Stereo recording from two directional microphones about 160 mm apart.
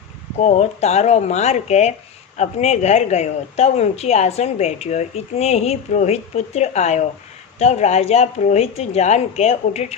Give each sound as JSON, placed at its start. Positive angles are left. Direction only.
{"t": 0.4, "sound": "a woman's voice", "side_deg": 45}